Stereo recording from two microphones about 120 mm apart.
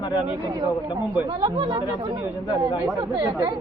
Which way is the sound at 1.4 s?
40° right (ahead or behind).